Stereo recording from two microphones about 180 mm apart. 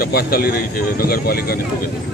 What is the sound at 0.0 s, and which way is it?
Speech, 60° left (ahead or behind).